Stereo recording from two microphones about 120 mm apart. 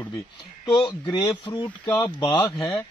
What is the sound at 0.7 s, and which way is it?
Speech, 40° left (ahead or behind).